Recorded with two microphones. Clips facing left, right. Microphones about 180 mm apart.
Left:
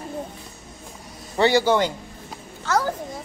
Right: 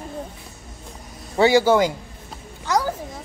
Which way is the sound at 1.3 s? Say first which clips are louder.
Right 3 dB; 10° right (ahead or behind).